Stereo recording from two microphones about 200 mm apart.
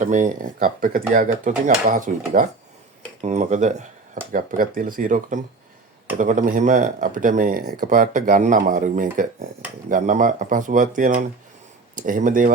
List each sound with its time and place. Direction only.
0.0 s speech: 40° right (ahead or behind)